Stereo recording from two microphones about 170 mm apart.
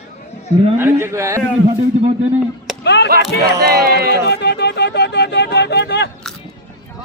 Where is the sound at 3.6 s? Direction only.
70° right (ahead or behind).